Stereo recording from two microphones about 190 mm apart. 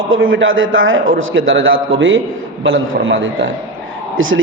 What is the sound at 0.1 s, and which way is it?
A man's voice, 90° right.